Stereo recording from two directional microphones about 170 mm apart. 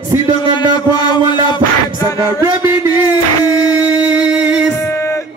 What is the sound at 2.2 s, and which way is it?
Speech, 20° right (ahead or behind).